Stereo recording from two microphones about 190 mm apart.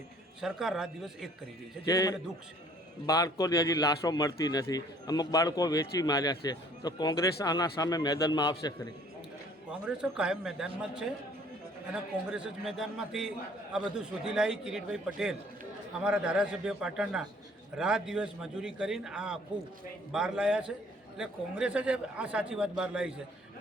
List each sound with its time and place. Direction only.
0.4 s a man's voice: centre (ahead or behind)
3.1 s speech: 20° left (ahead or behind)
9.6 s a man's voice: 5° right (ahead or behind)
12.3 s a man's voice: 5° right (ahead or behind)